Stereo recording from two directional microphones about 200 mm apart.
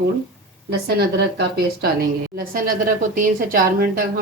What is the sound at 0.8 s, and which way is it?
Speech, 55° right (ahead or behind).